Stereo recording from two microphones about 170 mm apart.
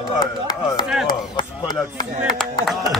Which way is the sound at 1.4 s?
25° left (ahead or behind).